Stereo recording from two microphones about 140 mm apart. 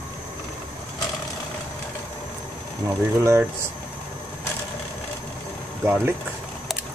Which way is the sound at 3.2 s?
20° right (ahead or behind).